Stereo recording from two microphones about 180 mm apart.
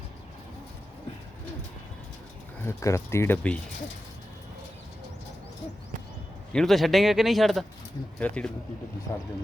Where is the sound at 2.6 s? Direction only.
15° left (ahead or behind).